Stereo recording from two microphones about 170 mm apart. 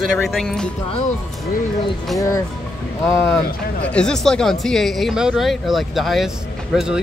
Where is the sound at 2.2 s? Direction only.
20° left (ahead or behind).